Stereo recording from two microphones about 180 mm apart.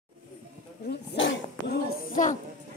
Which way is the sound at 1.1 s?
90° left.